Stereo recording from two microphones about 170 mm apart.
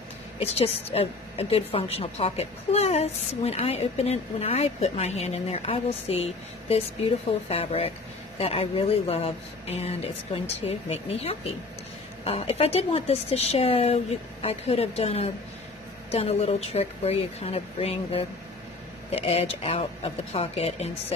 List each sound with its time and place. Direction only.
0.4 s a woman's voice: 35° left (ahead or behind)